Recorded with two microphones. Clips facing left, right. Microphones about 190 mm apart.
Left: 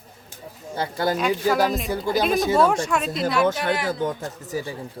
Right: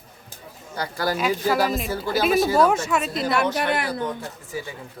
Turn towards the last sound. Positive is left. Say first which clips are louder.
# left 2 dB
turn(degrees=45)  # may be behind; listen again after turning